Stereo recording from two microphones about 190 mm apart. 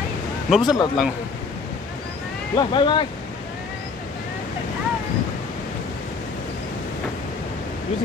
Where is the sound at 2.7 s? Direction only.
25° left (ahead or behind).